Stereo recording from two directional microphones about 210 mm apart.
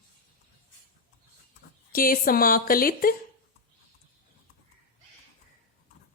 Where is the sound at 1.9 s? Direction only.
45° left (ahead or behind).